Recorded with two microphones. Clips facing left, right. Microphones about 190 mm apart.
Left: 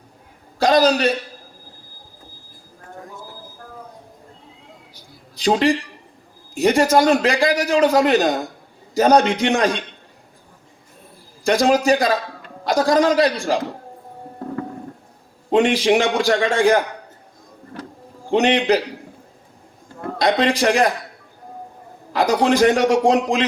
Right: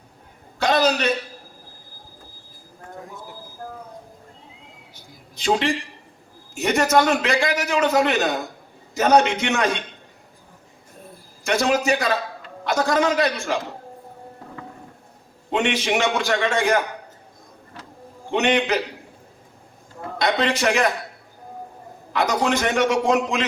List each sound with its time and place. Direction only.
0.6 s a sound: 35° left (ahead or behind)
5.4 s a man's voice: 35° left (ahead or behind)
11.4 s a man's voice: 35° left (ahead or behind)
15.4 s a man's voice: 35° left (ahead or behind)
18.3 s a man's voice: 35° left (ahead or behind)
20.1 s a man's voice: 35° left (ahead or behind)
22.1 s a man's voice: 35° left (ahead or behind)